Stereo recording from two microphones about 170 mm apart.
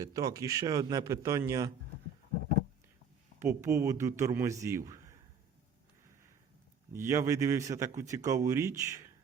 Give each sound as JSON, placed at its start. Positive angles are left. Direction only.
{"t": 0.0, "sound": "speech", "side_deg": -20}
{"t": 3.4, "sound": "speech", "side_deg": -15}
{"t": 4.9, "sound": "a sound", "side_deg": -20}
{"t": 6.9, "sound": "speech", "side_deg": -15}